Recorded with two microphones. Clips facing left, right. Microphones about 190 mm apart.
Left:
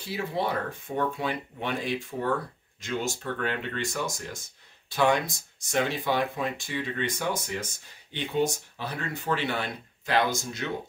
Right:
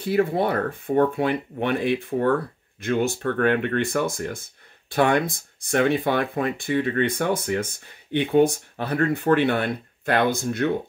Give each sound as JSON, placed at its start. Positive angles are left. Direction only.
{"t": 0.0, "sound": "speech", "side_deg": -55}